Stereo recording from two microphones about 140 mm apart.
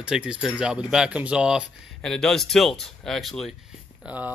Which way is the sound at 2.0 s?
5° left (ahead or behind).